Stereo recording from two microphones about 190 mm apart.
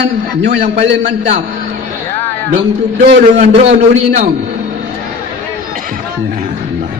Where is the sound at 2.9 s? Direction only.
40° right (ahead or behind).